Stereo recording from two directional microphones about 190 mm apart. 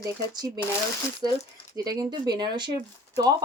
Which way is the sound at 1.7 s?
20° right (ahead or behind).